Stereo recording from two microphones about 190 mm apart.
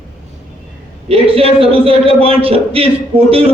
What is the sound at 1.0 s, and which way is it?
A man's voice, 30° right (ahead or behind).